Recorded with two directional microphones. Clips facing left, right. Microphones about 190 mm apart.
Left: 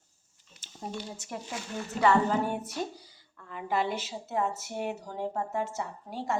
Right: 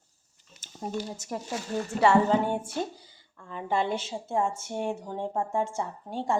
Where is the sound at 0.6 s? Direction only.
45° right (ahead or behind).